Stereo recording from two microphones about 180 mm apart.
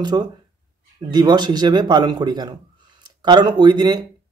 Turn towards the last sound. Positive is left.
turn(degrees=-25)  # may be behind; listen again after turning